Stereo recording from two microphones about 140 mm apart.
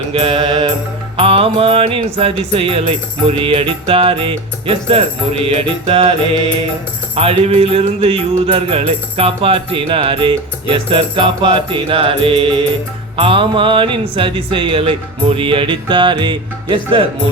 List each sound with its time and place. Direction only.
0.1 s music: 40° right (ahead or behind)
7.2 s music: 45° right (ahead or behind)